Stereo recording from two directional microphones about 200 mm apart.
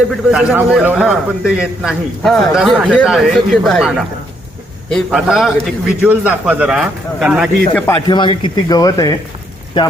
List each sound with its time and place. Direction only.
0.3 s a man's voice: 5° right (ahead or behind)
8.0 s speech: 20° left (ahead or behind)